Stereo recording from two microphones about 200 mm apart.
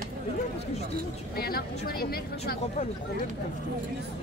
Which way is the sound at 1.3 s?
50° left (ahead or behind).